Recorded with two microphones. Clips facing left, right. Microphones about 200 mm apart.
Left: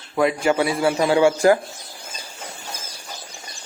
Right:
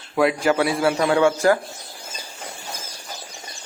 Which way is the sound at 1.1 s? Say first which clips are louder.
Left 3 dB; 15° left (ahead or behind).